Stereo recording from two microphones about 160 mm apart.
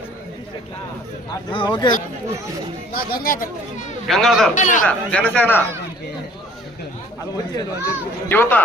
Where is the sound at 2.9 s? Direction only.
70° left (ahead or behind).